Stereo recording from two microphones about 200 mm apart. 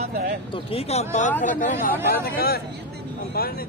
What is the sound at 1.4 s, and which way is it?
Speech, 40° left (ahead or behind).